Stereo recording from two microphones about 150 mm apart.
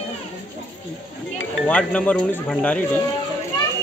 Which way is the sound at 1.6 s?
10° left (ahead or behind).